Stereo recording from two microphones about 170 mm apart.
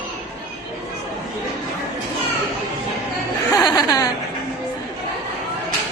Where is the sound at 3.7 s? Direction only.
25° left (ahead or behind).